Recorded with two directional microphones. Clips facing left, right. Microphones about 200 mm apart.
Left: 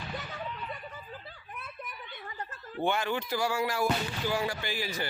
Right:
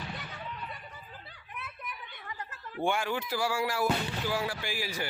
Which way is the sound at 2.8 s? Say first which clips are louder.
Left 1 dB; 10° right (ahead or behind).